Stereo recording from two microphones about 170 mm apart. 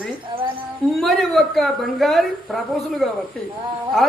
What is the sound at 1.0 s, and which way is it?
A woman's voice, centre (ahead or behind).